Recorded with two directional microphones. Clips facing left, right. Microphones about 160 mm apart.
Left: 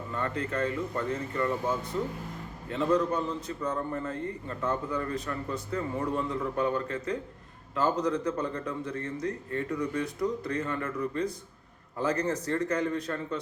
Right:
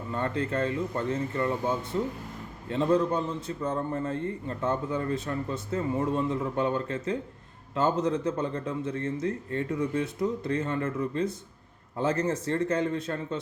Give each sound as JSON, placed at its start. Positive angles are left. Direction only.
{"t": 0.1, "sound": "a man's voice", "side_deg": -30}
{"t": 2.6, "sound": "a man's voice", "side_deg": -30}